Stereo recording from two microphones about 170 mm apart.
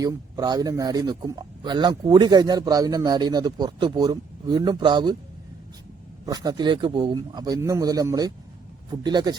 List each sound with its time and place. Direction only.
0.0 s speech: 20° right (ahead or behind)
6.2 s speech: 25° right (ahead or behind)